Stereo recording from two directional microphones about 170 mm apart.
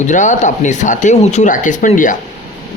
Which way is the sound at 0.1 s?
45° left (ahead or behind).